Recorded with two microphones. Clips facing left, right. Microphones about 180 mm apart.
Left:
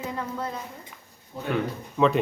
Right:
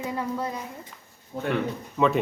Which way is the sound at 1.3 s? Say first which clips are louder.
Right 5 dB; 45° right (ahead or behind).